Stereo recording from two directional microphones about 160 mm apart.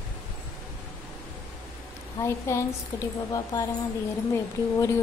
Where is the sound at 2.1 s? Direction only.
20° left (ahead or behind).